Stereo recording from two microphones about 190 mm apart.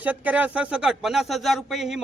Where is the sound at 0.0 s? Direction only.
10° right (ahead or behind).